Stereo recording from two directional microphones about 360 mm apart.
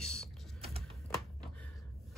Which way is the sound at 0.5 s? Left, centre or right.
Centre.